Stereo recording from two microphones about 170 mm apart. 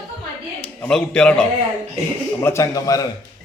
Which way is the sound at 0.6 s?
5° left (ahead or behind).